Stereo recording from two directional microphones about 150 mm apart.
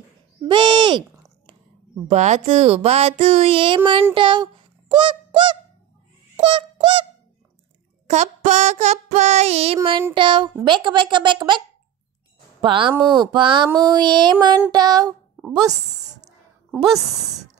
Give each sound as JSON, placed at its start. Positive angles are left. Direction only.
{"t": 0.5, "sound": "speech", "side_deg": -30}
{"t": 2.0, "sound": "speech", "side_deg": -50}
{"t": 4.1, "sound": "a sound", "side_deg": -30}
{"t": 8.1, "sound": "speech", "side_deg": -50}
{"t": 10.1, "sound": "speech", "side_deg": -35}
{"t": 12.6, "sound": "speech", "side_deg": -35}
{"t": 13.7, "sound": "a sound", "side_deg": -30}
{"t": 15.5, "sound": "a woman's voice", "side_deg": -25}
{"t": 16.7, "sound": "a woman's voice", "side_deg": 0}